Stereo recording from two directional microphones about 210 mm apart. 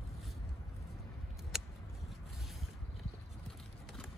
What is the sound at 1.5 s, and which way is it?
Scissors, centre (ahead or behind).